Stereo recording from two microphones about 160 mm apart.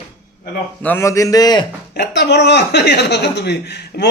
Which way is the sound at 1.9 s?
90° left.